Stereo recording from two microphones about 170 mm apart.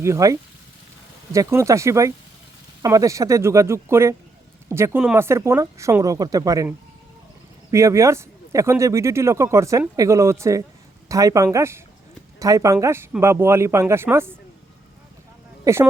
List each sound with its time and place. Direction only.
0.0 s speech: 20° right (ahead or behind)
15.6 s speech: 15° right (ahead or behind)